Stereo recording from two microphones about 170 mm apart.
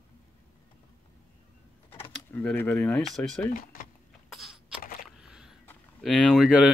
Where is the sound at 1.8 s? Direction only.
35° left (ahead or behind).